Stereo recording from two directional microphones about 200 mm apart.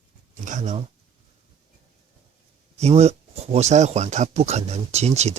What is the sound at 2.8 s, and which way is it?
Speech, 30° right (ahead or behind).